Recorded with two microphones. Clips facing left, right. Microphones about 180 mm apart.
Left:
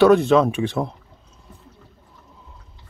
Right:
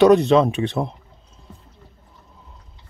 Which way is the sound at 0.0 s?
20° right (ahead or behind).